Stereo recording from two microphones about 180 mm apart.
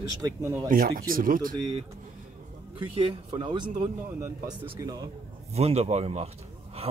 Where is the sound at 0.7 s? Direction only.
50° right (ahead or behind).